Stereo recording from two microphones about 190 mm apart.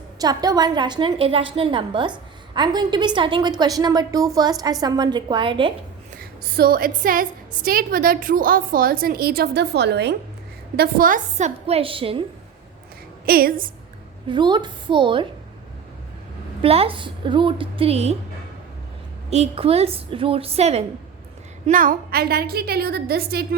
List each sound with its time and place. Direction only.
0.2 s a woman's voice: 20° right (ahead or behind)
6.4 s a woman's voice: 50° right (ahead or behind)
10.8 s a woman's voice: 50° right (ahead or behind); by 12.2 s 30° right (ahead or behind)
13.2 s a woman's voice: 50° right (ahead or behind)
14.3 s a woman's voice: 25° right (ahead or behind)
16.6 s a woman's voice: 30° right (ahead or behind)
19.3 s a woman's voice: 30° right (ahead or behind)
21.7 s a woman's voice: 45° right (ahead or behind)